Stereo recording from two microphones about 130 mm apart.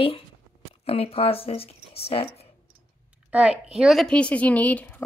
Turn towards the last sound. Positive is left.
turn(degrees=10)  # may be behind; listen again after turning